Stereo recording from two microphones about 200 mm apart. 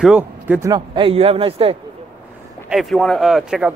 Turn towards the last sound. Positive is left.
turn(degrees=0)  # may be behind; listen again after turning